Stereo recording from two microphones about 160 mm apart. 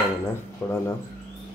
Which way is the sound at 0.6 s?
20° left (ahead or behind).